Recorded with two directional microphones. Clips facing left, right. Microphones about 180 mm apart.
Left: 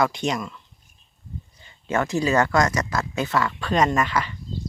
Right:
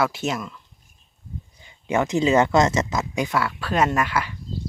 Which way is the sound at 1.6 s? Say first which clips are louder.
Right 2 dB; 15° right (ahead or behind).